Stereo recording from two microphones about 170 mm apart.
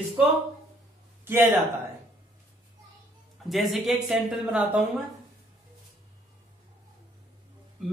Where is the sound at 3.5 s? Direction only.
Centre (ahead or behind).